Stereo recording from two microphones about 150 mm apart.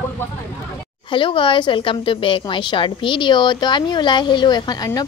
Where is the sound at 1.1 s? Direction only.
35° left (ahead or behind).